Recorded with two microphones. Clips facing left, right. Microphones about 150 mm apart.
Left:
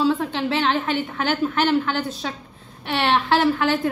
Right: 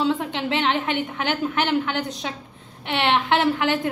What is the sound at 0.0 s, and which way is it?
A woman's voice, 20° right (ahead or behind).